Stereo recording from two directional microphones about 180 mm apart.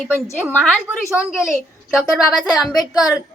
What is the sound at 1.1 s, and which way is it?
A child's voice, centre (ahead or behind).